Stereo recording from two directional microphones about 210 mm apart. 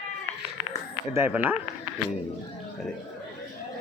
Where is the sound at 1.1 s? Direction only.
10° right (ahead or behind).